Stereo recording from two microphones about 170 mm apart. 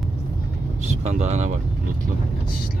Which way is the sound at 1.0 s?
40° right (ahead or behind).